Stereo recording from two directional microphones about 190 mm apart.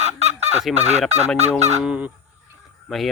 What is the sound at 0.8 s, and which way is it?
Fowl, 35° right (ahead or behind).